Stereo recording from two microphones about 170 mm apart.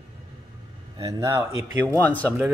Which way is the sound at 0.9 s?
20° right (ahead or behind).